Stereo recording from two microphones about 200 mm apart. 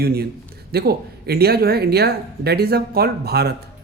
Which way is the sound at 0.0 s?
50° right (ahead or behind).